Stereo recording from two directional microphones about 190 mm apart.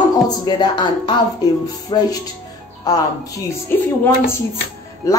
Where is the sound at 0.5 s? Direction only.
25° left (ahead or behind).